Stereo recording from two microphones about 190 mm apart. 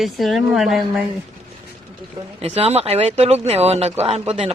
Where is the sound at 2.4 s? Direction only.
30° right (ahead or behind).